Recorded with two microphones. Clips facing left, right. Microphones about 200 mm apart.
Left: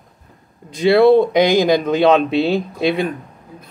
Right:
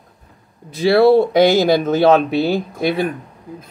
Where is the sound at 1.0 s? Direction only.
5° right (ahead or behind).